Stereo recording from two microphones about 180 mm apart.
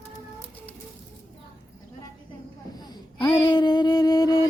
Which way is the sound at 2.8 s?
20° left (ahead or behind).